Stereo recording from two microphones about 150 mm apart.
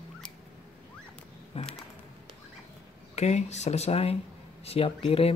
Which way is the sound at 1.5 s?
40° left (ahead or behind).